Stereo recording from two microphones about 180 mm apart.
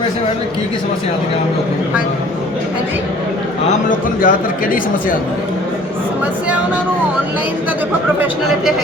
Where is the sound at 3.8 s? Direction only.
50° left (ahead or behind).